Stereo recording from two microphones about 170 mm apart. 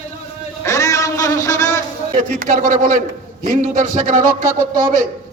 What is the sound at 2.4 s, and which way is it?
Speech, 50° right (ahead or behind).